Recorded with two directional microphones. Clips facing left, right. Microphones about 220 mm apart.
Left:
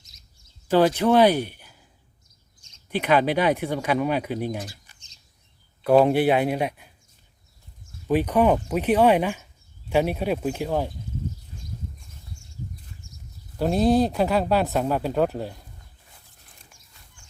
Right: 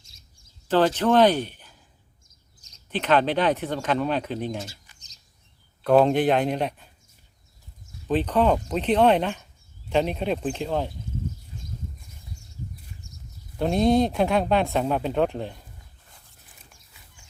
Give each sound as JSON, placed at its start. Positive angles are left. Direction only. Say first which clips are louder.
{"t": 0.7, "sound": "speech", "louder": "left 2 dB", "side_deg": 10}
{"t": 2.2, "sound": "chirp", "louder": "right 1 dB", "side_deg": -35}
{"t": 2.9, "sound": "speech", "louder": "left 1 dB", "side_deg": 10}
{"t": 4.9, "sound": "chirp", "louder": "right 1 dB", "side_deg": -40}
{"t": 6.1, "sound": "speech", "louder": "left 1 dB", "side_deg": 10}
{"t": 8.0, "sound": "speech", "louder": "left 2 dB", "side_deg": 10}
{"t": 13.0, "sound": "horse", "louder": "right 1 dB", "side_deg": -20}
{"t": 13.6, "sound": "speech", "louder": "even", "side_deg": 5}